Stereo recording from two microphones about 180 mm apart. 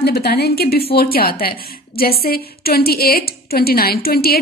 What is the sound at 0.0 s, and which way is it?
A woman's voice, 60° left (ahead or behind).